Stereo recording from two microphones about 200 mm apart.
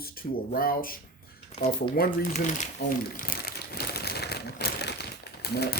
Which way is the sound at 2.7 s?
45° left (ahead or behind).